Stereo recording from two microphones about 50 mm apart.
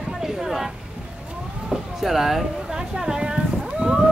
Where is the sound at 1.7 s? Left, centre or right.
Centre.